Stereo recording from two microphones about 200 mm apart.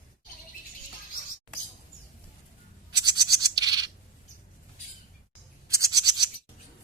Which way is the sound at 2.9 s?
20° right (ahead or behind).